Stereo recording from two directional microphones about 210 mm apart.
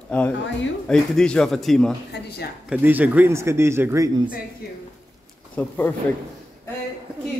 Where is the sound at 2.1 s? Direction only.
50° left (ahead or behind).